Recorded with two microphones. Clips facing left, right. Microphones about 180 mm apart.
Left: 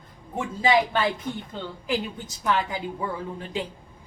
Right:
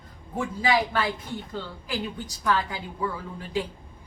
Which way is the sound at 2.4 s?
20° left (ahead or behind).